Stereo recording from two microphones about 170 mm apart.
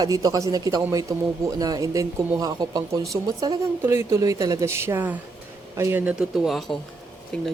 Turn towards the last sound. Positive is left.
turn(degrees=5)  # may be behind; listen again after turning